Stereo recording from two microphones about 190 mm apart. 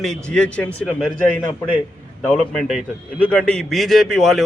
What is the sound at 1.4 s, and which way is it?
Speech, 25° left (ahead or behind).